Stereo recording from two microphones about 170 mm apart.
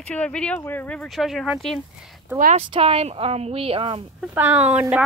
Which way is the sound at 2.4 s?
45° right (ahead or behind).